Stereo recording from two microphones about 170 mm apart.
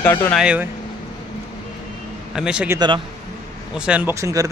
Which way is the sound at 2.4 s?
5° right (ahead or behind).